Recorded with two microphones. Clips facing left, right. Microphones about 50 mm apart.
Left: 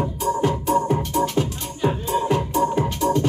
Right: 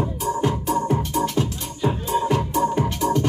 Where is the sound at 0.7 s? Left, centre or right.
Left.